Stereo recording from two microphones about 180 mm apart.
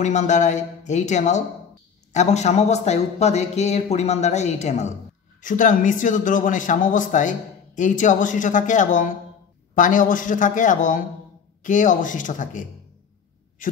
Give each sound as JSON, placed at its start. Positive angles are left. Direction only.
{"t": 0.0, "sound": "speech", "side_deg": 40}